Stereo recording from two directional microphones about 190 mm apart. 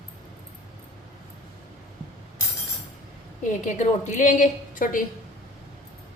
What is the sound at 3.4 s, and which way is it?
A woman's voice, 40° left (ahead or behind).